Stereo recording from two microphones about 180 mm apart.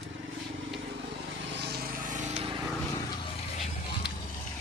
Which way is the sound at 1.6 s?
60° right (ahead or behind).